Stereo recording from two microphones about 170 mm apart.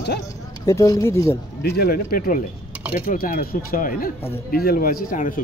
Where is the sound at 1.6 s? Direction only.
70° left (ahead or behind); by 5.4 s 50° left (ahead or behind).